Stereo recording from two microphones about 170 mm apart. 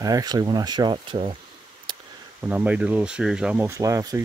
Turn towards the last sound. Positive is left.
turn(degrees=-20)  # may be behind; listen again after turning